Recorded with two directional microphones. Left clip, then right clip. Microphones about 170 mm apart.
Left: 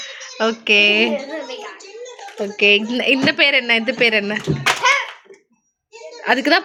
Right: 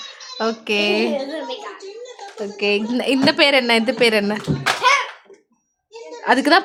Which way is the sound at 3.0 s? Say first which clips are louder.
Right 2 dB; 5° right (ahead or behind).